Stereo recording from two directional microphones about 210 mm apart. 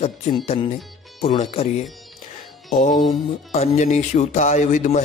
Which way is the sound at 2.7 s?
35° left (ahead or behind).